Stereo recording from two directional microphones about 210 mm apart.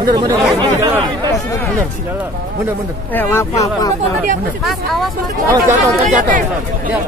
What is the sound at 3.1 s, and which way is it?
Speech, 10° left (ahead or behind).